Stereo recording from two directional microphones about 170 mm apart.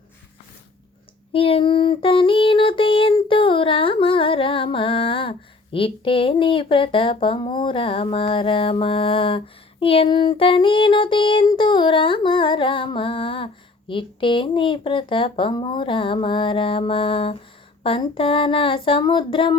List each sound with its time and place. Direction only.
1.3 s child singing: 30° left (ahead or behind)